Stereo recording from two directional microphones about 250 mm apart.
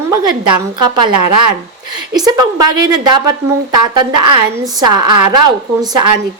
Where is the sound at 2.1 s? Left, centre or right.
Centre.